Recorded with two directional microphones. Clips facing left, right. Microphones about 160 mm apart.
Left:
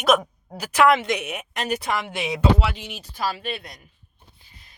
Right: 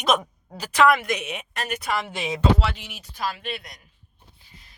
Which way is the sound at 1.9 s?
10° left (ahead or behind).